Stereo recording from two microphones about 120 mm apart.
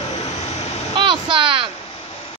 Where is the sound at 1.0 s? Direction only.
45° right (ahead or behind).